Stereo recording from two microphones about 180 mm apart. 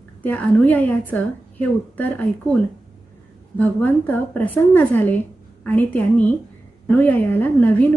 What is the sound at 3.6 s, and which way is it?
A woman's voice, 10° left (ahead or behind).